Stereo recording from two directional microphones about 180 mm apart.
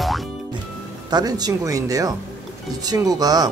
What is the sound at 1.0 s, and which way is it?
Speech, 20° right (ahead or behind).